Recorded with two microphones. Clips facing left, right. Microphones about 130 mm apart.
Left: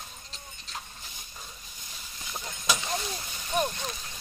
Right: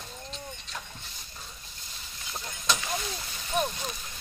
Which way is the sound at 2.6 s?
10° left (ahead or behind).